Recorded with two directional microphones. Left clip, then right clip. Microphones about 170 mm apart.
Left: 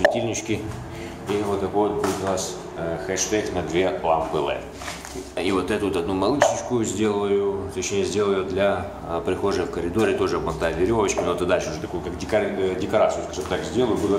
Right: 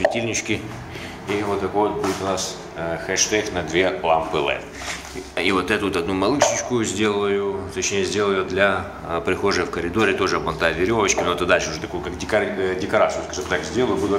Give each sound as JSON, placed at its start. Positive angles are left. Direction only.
{"t": 0.0, "sound": "speech", "side_deg": 5}